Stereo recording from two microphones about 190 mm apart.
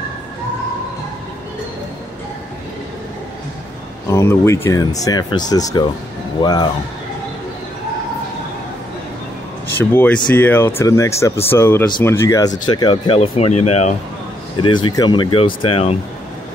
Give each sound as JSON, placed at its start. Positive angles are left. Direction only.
{"t": 4.1, "sound": "speech", "side_deg": 15}
{"t": 9.8, "sound": "speech", "side_deg": 10}
{"t": 14.6, "sound": "speech", "side_deg": 25}